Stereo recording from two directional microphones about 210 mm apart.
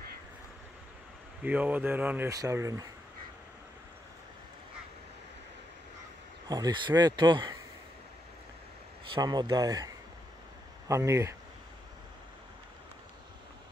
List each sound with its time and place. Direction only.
1.4 s speech: 5° right (ahead or behind)
6.5 s speech: 20° right (ahead or behind)
9.1 s speech: 20° right (ahead or behind)
10.9 s speech: 15° right (ahead or behind)